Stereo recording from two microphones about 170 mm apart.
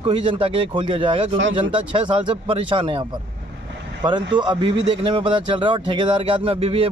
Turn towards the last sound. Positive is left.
turn(degrees=-35)  # may be behind; listen again after turning